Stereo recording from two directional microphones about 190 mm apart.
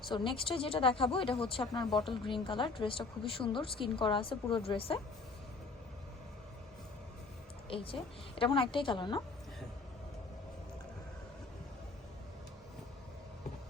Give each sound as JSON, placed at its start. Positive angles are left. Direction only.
{"t": 0.1, "sound": "speech", "side_deg": 25}
{"t": 7.7, "sound": "speech", "side_deg": 30}